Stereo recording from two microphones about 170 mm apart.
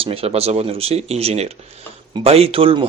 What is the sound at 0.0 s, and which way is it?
Speech, 35° right (ahead or behind).